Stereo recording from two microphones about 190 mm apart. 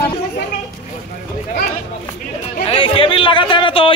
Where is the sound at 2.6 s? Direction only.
30° left (ahead or behind).